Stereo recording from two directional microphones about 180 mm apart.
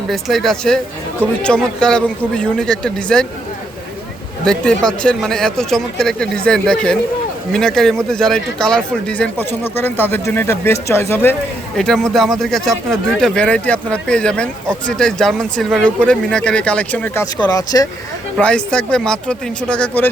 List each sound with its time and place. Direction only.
0.1 s speech: centre (ahead or behind)
4.4 s speech: 5° left (ahead or behind)
12.1 s speech: centre (ahead or behind)
17.5 s speech: 20° left (ahead or behind)
18.3 s speech: 5° left (ahead or behind)